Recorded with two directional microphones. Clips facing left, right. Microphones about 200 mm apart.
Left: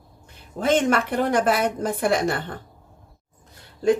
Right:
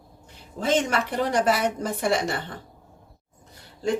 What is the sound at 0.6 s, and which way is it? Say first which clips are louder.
A woman's voice: left 3 dB; 55° left (ahead or behind).